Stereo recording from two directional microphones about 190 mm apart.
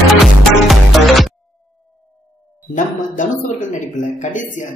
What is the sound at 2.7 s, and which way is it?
Speech, 40° left (ahead or behind).